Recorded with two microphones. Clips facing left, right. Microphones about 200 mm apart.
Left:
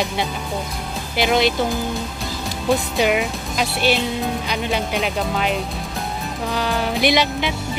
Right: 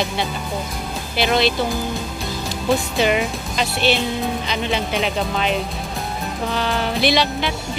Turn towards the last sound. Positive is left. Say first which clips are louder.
# even
turn(degrees=15)  # may be behind; listen again after turning